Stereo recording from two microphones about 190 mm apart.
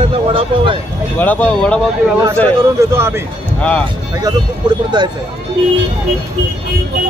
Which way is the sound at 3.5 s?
5° left (ahead or behind).